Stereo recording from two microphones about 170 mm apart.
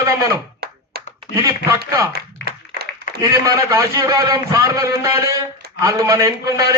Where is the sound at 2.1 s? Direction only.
70° right (ahead or behind).